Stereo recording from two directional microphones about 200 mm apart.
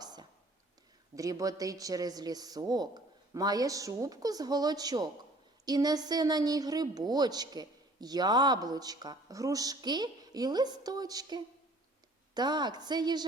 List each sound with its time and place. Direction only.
0.0 s whispering: 20° right (ahead or behind)
1.1 s a woman's voice: 15° right (ahead or behind)